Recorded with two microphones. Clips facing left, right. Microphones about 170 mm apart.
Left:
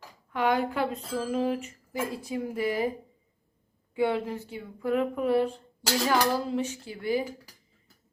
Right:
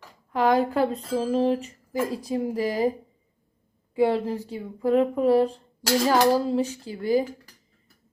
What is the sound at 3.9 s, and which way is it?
Speech, 35° right (ahead or behind).